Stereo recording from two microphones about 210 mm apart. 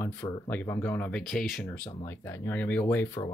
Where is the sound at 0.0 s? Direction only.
10° left (ahead or behind).